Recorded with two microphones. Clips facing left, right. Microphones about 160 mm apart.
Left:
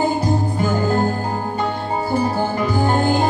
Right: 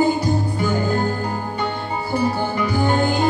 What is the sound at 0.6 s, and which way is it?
Music, 40° left (ahead or behind).